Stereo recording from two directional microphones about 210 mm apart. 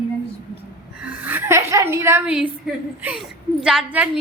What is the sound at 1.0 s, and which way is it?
A woman's voice, 10° right (ahead or behind).